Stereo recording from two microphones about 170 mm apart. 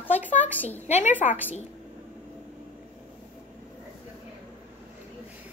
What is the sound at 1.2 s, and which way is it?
Speech, 45° left (ahead or behind).